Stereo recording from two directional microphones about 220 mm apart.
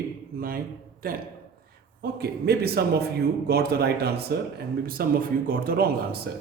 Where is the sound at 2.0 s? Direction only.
45° right (ahead or behind).